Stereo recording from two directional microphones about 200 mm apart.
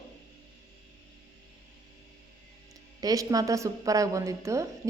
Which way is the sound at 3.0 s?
15° right (ahead or behind).